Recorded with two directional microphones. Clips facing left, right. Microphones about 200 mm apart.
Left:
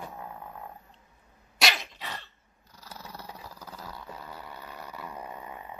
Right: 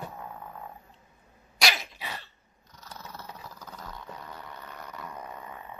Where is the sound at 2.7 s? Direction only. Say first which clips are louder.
Even; 10° left (ahead or behind).